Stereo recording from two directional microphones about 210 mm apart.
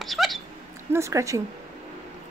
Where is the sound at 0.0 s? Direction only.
Centre (ahead or behind).